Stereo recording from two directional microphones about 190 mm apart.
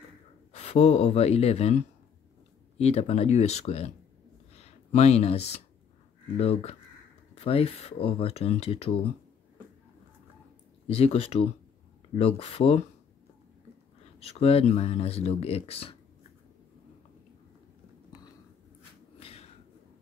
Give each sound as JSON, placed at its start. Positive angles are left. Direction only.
{"t": 0.5, "sound": "speech", "side_deg": 35}
{"t": 10.9, "sound": "speech", "side_deg": 30}
{"t": 14.2, "sound": "speech", "side_deg": 30}
{"t": 19.1, "sound": "a sound", "side_deg": 30}